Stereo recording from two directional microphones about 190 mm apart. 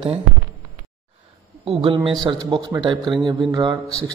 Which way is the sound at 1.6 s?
30° right (ahead or behind).